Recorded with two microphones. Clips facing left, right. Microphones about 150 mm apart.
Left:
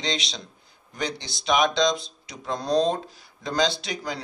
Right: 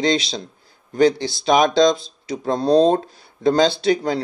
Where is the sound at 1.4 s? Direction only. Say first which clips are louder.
Right 7 dB; 35° right (ahead or behind).